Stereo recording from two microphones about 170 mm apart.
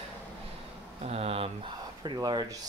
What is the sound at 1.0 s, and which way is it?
Speech, 35° right (ahead or behind).